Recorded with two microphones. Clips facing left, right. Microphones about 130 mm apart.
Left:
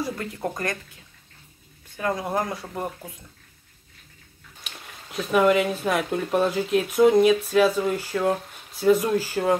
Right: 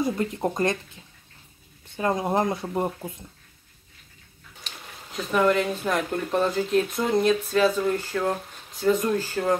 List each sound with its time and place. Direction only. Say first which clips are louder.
0.0 s speech: right 4 dB; 20° right (ahead or behind)
2.0 s speech: right 2 dB; 25° right (ahead or behind)
4.6 s speech: even; 10° left (ahead or behind)